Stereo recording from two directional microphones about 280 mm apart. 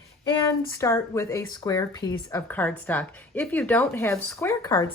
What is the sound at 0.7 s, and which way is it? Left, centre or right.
Speech, centre.